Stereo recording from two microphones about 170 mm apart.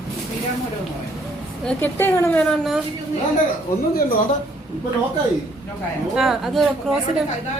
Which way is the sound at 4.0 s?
60° left (ahead or behind).